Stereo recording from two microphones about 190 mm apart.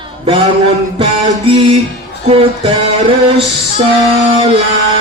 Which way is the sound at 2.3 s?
30° right (ahead or behind).